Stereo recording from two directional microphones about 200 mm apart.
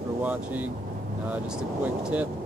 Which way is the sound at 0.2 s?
10° right (ahead or behind).